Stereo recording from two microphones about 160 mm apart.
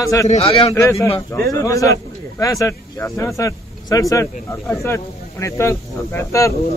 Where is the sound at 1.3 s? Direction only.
20° left (ahead or behind).